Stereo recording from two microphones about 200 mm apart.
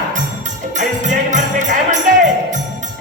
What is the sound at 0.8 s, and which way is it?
Music, 40° right (ahead or behind).